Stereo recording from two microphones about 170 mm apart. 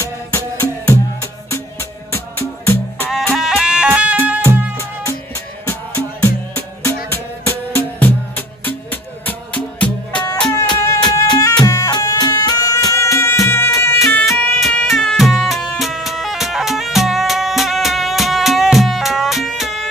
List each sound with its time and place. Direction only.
0.0 s music: 15° left (ahead or behind)
3.3 s music: 5° right (ahead or behind)
4.7 s music: 15° left (ahead or behind)
11.1 s music: 20° left (ahead or behind)
14.2 s music: centre (ahead or behind)